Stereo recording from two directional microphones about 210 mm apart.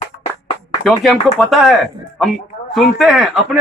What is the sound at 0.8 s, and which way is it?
Speech, centre (ahead or behind).